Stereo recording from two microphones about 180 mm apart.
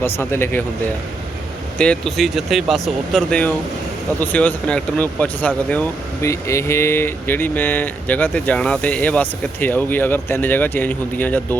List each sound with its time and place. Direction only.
0.0 s speech: 15° left (ahead or behind)
1.8 s speech: 5° left (ahead or behind)